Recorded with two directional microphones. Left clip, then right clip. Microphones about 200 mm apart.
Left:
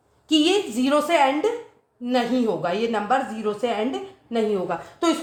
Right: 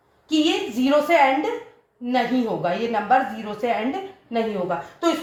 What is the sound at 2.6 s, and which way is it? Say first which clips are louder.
A woman's voice: right 1 dB; 45° left (ahead or behind).